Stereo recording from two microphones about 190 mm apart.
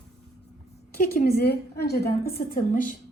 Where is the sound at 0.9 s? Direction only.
50° left (ahead or behind).